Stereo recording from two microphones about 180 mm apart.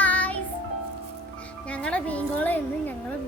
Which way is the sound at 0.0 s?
10° left (ahead or behind).